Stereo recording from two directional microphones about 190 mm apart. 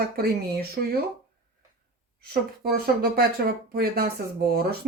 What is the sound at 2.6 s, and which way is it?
A woman's voice, 50° right (ahead or behind).